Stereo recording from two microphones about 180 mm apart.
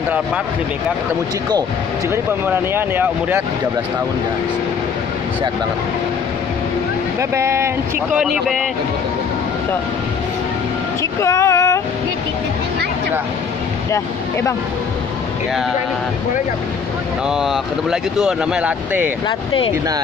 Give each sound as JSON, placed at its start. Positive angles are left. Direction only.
{"t": 2.4, "sound": "speech", "side_deg": -10}
{"t": 7.2, "sound": "speech", "side_deg": -15}
{"t": 8.2, "sound": "speech", "side_deg": 0}
{"t": 11.0, "sound": "speech", "side_deg": 15}
{"t": 17.3, "sound": "speech", "side_deg": -5}
{"t": 19.2, "sound": "speech", "side_deg": 30}